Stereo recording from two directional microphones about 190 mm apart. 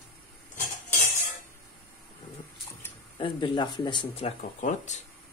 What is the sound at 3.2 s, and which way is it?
Speech, 25° left (ahead or behind).